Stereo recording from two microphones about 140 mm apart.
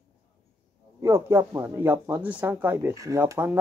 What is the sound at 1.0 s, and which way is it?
Speech, 20° right (ahead or behind).